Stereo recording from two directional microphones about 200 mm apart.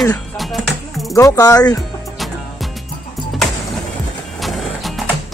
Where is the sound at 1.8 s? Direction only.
Centre (ahead or behind).